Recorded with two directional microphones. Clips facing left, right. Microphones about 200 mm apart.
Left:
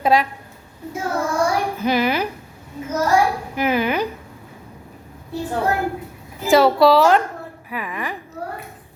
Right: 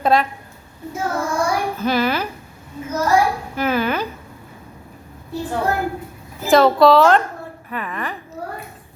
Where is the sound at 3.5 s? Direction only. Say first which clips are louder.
Left 1 dB; 15° left (ahead or behind).